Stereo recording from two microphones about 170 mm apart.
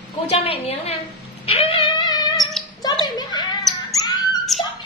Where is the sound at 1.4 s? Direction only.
35° left (ahead or behind).